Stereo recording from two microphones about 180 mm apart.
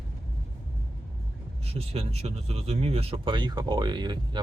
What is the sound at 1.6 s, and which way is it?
Speech, 35° right (ahead or behind).